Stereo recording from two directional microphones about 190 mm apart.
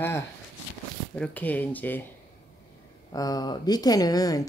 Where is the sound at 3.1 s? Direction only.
20° left (ahead or behind).